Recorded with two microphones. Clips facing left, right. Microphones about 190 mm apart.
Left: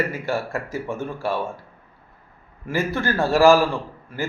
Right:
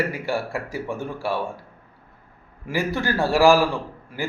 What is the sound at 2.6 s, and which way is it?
A man's voice, 15° right (ahead or behind).